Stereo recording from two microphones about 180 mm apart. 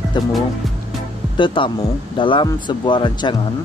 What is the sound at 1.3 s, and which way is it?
Speech, 30° left (ahead or behind).